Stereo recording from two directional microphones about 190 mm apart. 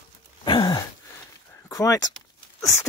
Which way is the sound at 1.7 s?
15° left (ahead or behind).